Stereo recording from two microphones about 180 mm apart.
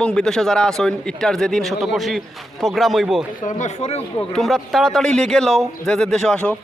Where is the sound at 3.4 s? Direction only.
40° left (ahead or behind).